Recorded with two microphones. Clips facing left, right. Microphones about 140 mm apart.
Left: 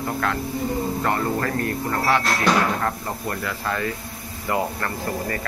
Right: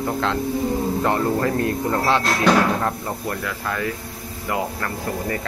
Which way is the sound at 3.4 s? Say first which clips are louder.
Left 2 dB; centre (ahead or behind).